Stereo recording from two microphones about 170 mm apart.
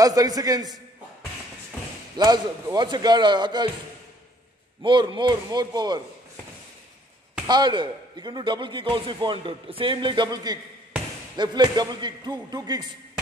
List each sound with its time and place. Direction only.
0.0 s a man's voice: 20° right (ahead or behind)
2.1 s a man's voice: 25° right (ahead or behind)
4.8 s a man's voice: 30° right (ahead or behind)
7.4 s a man's voice: 25° right (ahead or behind)